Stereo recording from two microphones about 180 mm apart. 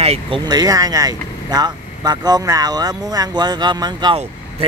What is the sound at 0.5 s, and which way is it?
Speech, 20° right (ahead or behind).